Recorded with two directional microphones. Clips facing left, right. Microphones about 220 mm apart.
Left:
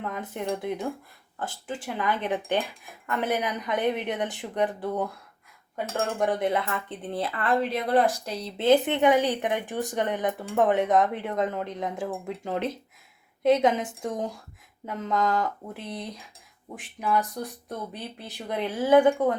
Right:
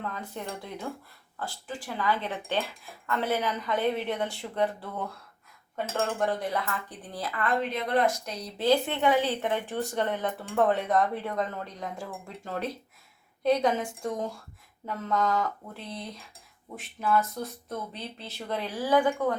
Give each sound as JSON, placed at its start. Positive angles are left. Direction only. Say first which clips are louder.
{"t": 0.1, "sound": "speech", "louder": "left 6 dB", "side_deg": 15}
{"t": 6.1, "sound": "speech", "louder": "left 4 dB", "side_deg": 20}